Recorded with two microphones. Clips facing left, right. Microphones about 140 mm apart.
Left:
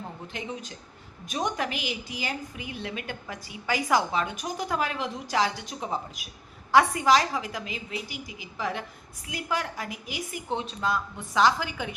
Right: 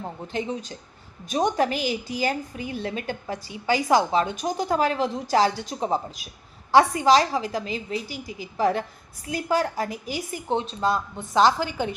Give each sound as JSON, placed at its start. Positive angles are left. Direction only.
{"t": 0.3, "sound": "a woman's voice", "side_deg": -30}